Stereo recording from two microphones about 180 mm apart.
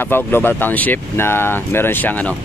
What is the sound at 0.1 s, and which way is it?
Speech, 10° left (ahead or behind).